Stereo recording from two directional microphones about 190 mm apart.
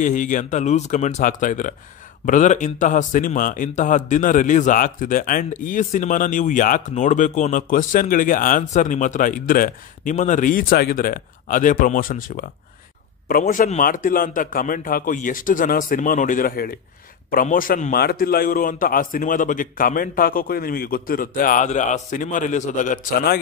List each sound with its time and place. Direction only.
0.0 s a man's voice: 45° left (ahead or behind)